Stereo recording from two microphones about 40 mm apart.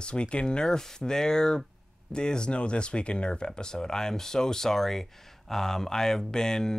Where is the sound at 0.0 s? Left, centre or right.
Left.